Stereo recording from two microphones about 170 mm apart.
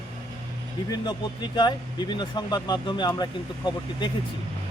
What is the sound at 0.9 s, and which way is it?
A man's voice, 25° left (ahead or behind).